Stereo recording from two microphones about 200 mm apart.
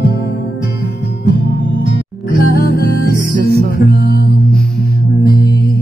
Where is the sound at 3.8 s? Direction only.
50° left (ahead or behind).